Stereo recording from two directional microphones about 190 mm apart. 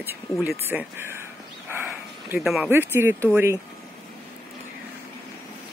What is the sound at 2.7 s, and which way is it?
Speech, 10° right (ahead or behind).